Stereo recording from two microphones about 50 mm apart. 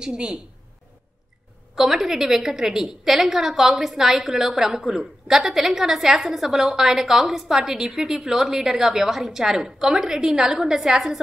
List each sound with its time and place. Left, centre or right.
0.0 s a woman's voice: centre
1.8 s a woman's voice: centre